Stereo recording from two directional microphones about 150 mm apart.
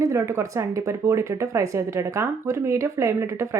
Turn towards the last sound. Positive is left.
turn(degrees=-20)  # may be behind; listen again after turning